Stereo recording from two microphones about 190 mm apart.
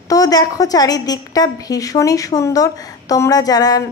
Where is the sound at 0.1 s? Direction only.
20° left (ahead or behind).